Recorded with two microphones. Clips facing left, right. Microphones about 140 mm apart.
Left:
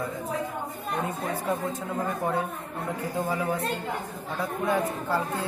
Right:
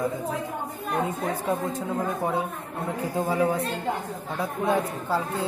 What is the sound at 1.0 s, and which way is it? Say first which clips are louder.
Speech: even; 20° right (ahead or behind).